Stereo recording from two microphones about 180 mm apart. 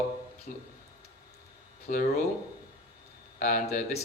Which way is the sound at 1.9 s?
50° left (ahead or behind).